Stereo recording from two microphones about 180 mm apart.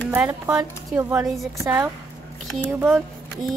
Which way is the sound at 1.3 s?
Centre (ahead or behind).